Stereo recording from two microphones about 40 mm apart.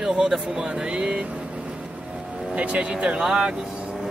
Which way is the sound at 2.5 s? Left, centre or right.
Right.